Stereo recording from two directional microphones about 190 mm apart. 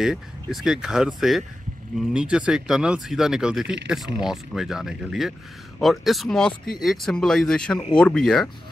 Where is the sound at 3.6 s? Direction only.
65° right (ahead or behind).